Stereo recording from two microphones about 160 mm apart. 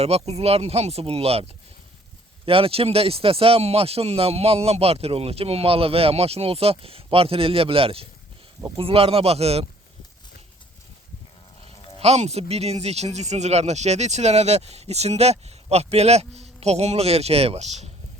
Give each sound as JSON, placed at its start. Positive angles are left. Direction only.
{"t": 0.0, "sound": "speech", "side_deg": -40}
{"t": 2.5, "sound": "speech", "side_deg": -35}
{"t": 11.6, "sound": "speech", "side_deg": -40}